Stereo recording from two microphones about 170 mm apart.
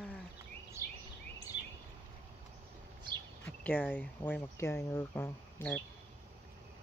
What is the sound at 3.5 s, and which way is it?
Speech, 5° left (ahead or behind).